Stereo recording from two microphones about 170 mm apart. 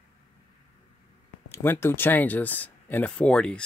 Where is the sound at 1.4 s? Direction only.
15° left (ahead or behind).